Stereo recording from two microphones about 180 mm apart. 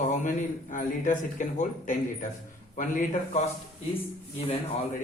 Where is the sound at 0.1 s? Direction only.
45° left (ahead or behind).